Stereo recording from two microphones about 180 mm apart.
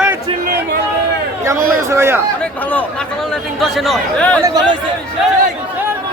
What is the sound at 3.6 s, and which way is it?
Speech, centre (ahead or behind).